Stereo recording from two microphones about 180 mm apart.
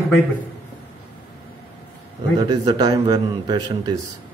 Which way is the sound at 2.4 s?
20° right (ahead or behind).